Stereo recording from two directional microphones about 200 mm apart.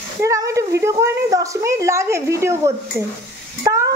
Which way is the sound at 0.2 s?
15° right (ahead or behind).